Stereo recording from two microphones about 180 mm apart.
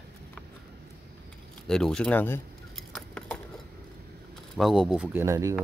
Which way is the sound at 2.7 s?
5° left (ahead or behind).